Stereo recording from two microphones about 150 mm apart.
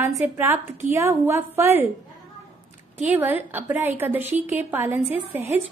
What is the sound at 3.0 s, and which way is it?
A woman's voice, 10° right (ahead or behind).